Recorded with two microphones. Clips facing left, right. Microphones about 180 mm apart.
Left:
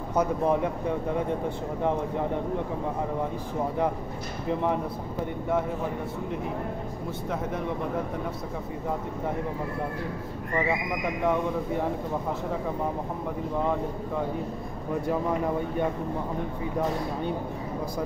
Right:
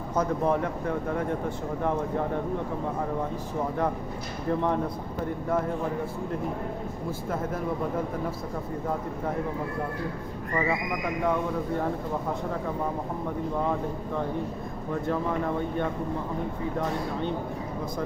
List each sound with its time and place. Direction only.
0.2 s speech: 15° left (ahead or behind)